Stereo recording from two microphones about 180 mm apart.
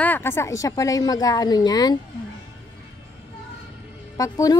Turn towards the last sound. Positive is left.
turn(degrees=20)  # may be behind; listen again after turning